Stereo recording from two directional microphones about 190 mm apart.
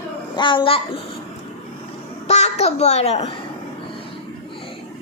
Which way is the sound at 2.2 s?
35° left (ahead or behind).